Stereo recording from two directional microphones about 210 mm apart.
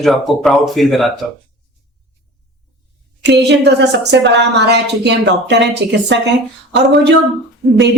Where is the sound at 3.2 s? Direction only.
55° right (ahead or behind).